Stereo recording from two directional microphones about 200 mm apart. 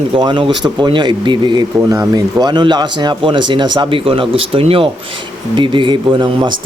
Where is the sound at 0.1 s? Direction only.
25° right (ahead or behind).